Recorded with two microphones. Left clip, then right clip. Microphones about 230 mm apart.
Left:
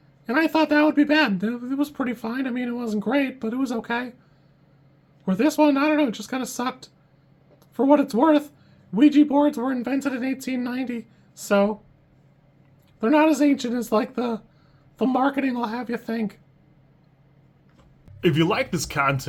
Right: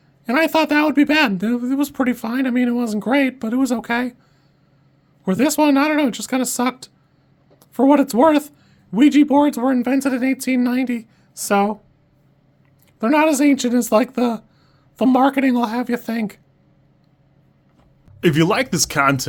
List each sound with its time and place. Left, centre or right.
0.3 s speech: right
5.2 s speech: right
13.0 s speech: right
18.2 s speech: right